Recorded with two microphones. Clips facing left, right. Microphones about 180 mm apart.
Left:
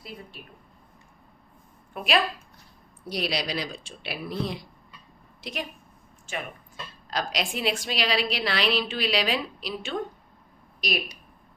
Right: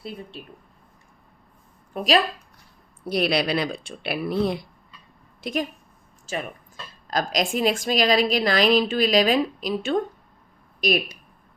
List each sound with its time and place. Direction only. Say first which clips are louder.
0.0 s speech: right 6 dB; 30° right (ahead or behind)
2.0 s speech: right 6 dB; 35° right (ahead or behind)
3.1 s a woman's voice: right 7 dB; 60° right (ahead or behind)
7.1 s a woman's voice: right 6 dB; 45° right (ahead or behind)